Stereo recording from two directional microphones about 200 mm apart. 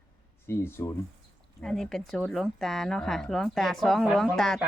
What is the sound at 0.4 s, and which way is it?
Speech, 10° left (ahead or behind).